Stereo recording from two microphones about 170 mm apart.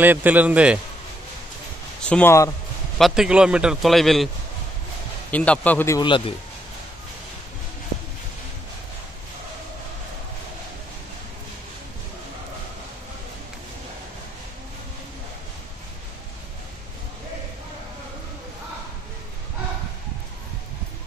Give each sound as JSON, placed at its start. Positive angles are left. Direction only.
{"t": 0.0, "sound": "a man's voice", "side_deg": -10}
{"t": 2.0, "sound": "speech", "side_deg": 5}
{"t": 3.0, "sound": "a man's voice", "side_deg": -5}
{"t": 5.3, "sound": "speech", "side_deg": 10}
{"t": 5.9, "sound": "speech", "side_deg": 30}